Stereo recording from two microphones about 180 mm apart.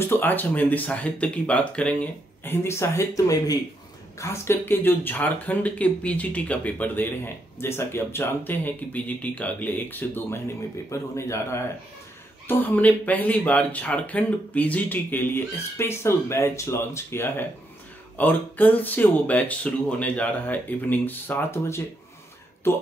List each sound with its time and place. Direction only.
0.0 s speech: 10° left (ahead or behind)